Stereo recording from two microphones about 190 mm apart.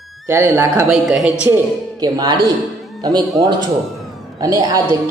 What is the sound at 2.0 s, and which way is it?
Speech, 20° right (ahead or behind).